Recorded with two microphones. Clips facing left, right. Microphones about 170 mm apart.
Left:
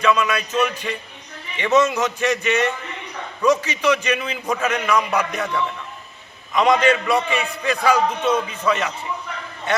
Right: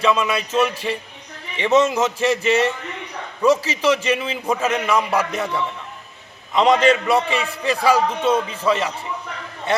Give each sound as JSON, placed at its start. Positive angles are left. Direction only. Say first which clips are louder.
{"t": 0.0, "sound": "a man's voice", "louder": "even", "side_deg": -30}
{"t": 6.5, "sound": "a man's voice", "louder": "right 1 dB", "side_deg": -30}